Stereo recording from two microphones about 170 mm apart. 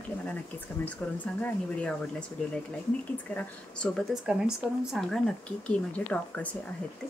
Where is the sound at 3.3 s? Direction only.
5° left (ahead or behind).